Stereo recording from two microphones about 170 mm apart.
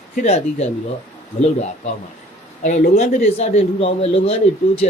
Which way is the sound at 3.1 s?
45° left (ahead or behind).